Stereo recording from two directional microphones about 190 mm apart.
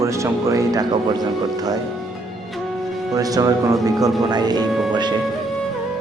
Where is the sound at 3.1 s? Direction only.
20° right (ahead or behind).